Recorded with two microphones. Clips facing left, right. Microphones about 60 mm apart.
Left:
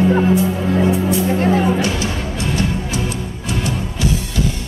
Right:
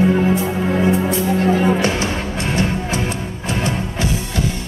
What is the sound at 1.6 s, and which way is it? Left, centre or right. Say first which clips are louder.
Music: right 1 dB; right.